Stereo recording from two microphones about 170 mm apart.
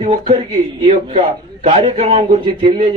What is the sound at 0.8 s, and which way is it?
A man's voice, 35° right (ahead or behind).